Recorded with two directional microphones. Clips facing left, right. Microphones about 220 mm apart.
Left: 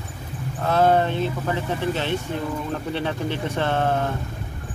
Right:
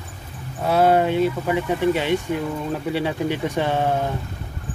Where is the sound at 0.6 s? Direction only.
10° right (ahead or behind).